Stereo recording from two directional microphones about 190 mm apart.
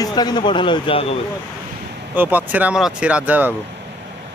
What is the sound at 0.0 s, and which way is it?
Speech, 20° left (ahead or behind).